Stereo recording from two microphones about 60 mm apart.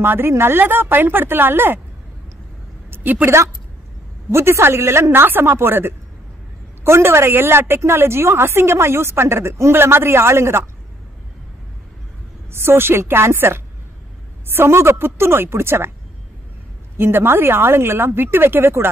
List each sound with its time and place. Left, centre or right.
0.0 s a woman's voice: right
2.9 s a sound: right
4.3 s a woman's voice: right
12.4 s a woman's voice: right
16.9 s a woman's voice: right